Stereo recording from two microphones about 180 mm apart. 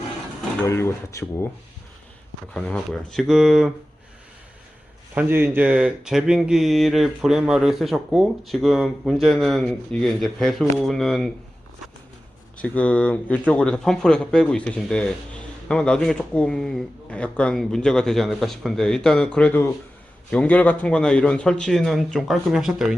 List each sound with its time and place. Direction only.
0.6 s speech: 15° left (ahead or behind)
2.5 s speech: 5° left (ahead or behind)
5.1 s speech: 10° right (ahead or behind)
12.5 s speech: 5° left (ahead or behind)